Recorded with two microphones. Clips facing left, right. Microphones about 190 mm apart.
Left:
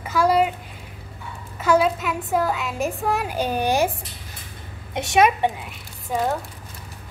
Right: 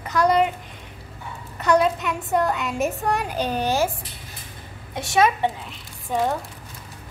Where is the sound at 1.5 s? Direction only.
5° left (ahead or behind).